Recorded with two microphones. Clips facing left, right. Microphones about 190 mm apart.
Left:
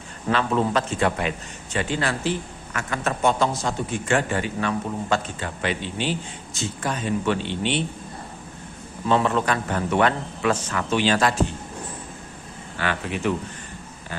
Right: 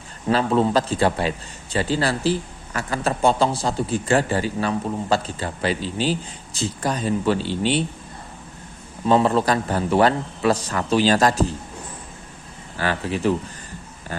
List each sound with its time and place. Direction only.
0.3 s a man's voice: 35° right (ahead or behind)
9.0 s a man's voice: 35° right (ahead or behind)
12.8 s a man's voice: 35° right (ahead or behind)